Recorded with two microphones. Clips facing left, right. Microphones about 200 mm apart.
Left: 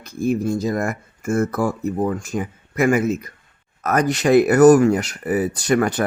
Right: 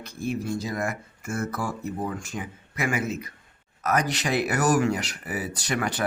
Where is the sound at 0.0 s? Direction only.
45° left (ahead or behind).